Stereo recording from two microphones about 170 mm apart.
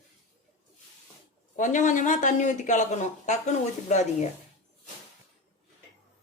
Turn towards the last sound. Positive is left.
turn(degrees=45)  # may be behind; listen again after turning